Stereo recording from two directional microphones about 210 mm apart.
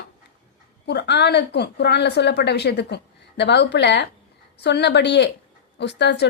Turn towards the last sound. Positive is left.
turn(degrees=55)  # may be behind; listen again after turning